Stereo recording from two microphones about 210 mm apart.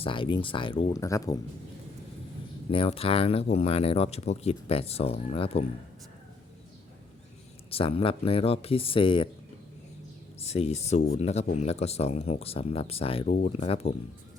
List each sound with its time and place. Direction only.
0.0 s speech: 25° left (ahead or behind)
2.6 s speech: 25° left (ahead or behind)
7.7 s speech: 25° left (ahead or behind)
10.4 s speech: 30° left (ahead or behind)